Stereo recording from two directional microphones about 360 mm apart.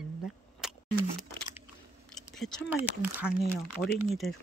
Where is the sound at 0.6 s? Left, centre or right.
Centre.